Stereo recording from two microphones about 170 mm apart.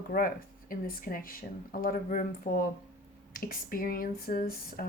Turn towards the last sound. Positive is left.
turn(degrees=55)  # may be behind; listen again after turning